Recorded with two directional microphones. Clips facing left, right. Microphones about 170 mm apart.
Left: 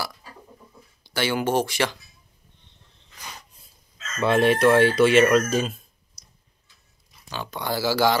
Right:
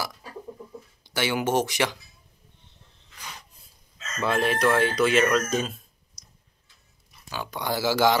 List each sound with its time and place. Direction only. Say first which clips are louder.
1.0 s speech: left 2 dB; 15° right (ahead or behind)
4.2 s speech: left 5 dB; centre (ahead or behind)
7.2 s speech: left 1 dB; 10° right (ahead or behind)